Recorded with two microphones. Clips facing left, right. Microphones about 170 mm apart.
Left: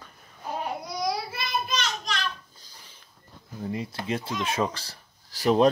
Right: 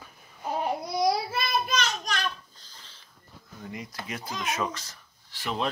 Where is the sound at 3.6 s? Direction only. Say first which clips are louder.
Left 7 dB; 30° left (ahead or behind).